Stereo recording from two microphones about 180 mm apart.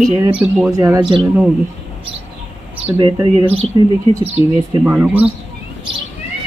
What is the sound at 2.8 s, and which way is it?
Speech, 30° right (ahead or behind).